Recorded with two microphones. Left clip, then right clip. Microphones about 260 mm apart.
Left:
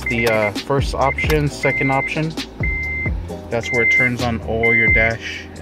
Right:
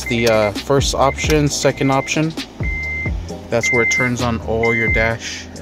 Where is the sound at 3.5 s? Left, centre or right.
Centre.